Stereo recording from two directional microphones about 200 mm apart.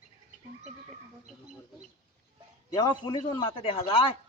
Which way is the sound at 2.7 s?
20° left (ahead or behind).